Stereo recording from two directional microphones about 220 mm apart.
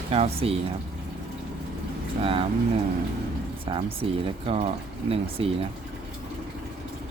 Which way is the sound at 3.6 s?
25° right (ahead or behind).